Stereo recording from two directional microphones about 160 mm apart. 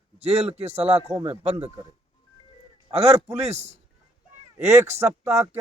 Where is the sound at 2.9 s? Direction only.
40° right (ahead or behind).